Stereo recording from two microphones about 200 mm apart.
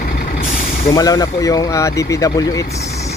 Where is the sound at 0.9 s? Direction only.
20° left (ahead or behind).